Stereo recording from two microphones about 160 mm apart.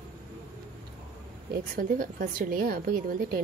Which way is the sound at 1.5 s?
65° right (ahead or behind).